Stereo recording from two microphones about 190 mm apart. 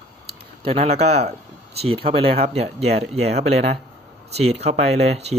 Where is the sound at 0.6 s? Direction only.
35° right (ahead or behind).